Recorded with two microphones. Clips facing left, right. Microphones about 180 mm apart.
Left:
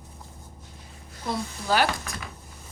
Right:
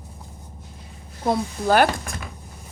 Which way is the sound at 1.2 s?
55° right (ahead or behind).